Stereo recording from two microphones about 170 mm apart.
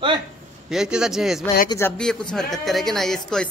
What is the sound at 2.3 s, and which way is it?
Speech, centre (ahead or behind).